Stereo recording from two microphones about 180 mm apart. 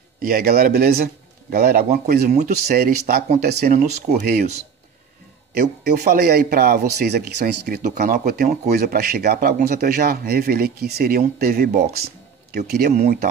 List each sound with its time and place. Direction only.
0.2 s a man's voice: 55° right (ahead or behind)
3.7 s speech: 40° right (ahead or behind)
4.2 s a man's voice: 60° right (ahead or behind)
5.5 s a man's voice: 65° right (ahead or behind)